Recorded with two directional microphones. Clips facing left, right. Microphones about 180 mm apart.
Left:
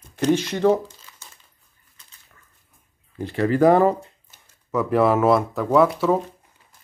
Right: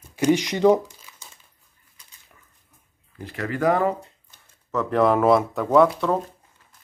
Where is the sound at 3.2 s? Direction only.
30° left (ahead or behind).